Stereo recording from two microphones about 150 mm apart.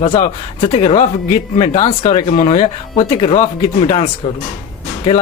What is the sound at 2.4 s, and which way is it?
Speech, 40° left (ahead or behind).